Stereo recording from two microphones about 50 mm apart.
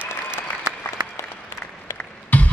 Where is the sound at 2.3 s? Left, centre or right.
Left.